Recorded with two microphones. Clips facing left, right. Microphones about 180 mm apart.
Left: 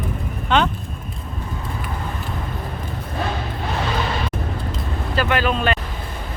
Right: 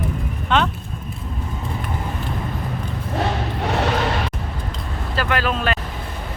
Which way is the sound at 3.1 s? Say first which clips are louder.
Right 3 dB; 75° right (ahead or behind).